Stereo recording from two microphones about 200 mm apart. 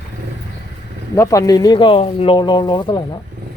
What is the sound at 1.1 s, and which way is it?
Speech, 15° left (ahead or behind).